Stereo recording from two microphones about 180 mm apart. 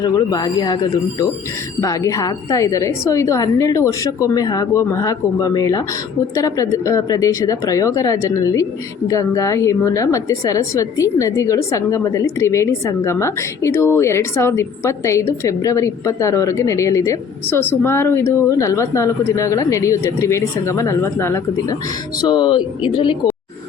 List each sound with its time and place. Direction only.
0.0 s a woman's voice: 20° left (ahead or behind)
1.8 s a woman's voice: 20° left (ahead or behind)